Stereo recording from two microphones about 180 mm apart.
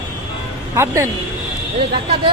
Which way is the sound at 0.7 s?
15° right (ahead or behind).